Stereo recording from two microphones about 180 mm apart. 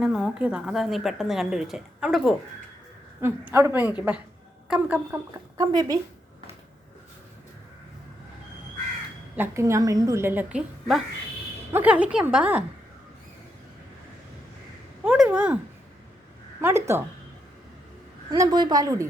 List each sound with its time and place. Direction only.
0.0 s a woman's voice: centre (ahead or behind); by 6.0 s 20° right (ahead or behind)
9.3 s a woman's voice: 15° right (ahead or behind)
15.0 s a woman's voice: 5° right (ahead or behind)
16.6 s a woman's voice: 15° right (ahead or behind)
18.3 s a woman's voice: 25° right (ahead or behind)